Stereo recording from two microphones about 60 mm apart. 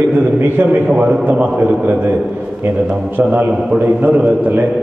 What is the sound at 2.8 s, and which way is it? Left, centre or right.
Speech, centre.